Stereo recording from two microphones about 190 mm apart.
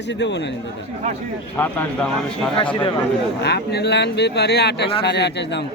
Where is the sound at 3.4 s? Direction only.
60° left (ahead or behind).